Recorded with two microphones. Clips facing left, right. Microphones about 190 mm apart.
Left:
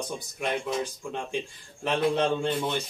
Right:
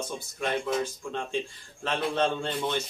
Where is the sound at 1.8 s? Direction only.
15° left (ahead or behind).